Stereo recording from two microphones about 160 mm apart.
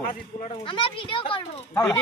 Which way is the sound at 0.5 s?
35° left (ahead or behind).